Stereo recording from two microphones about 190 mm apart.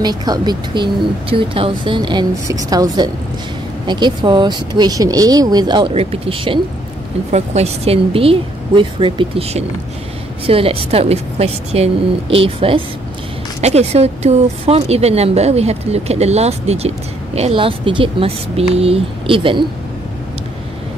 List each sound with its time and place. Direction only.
0.0 s speech: 20° right (ahead or behind)